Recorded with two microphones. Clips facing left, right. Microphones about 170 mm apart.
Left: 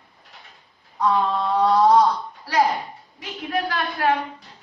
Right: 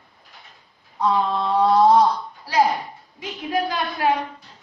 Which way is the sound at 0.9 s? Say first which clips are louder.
Even; 10° right (ahead or behind).